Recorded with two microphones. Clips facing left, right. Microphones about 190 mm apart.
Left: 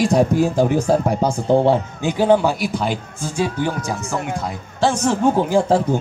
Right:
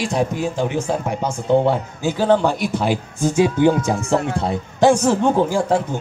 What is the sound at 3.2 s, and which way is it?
Speech, 20° right (ahead or behind).